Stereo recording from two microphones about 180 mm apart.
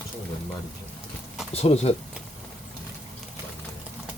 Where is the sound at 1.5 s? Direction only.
35° left (ahead or behind).